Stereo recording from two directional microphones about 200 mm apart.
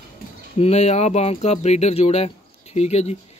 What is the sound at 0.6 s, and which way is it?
Speech, 30° left (ahead or behind).